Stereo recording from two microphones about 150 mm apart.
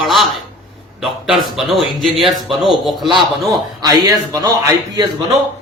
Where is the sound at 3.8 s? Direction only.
25° right (ahead or behind).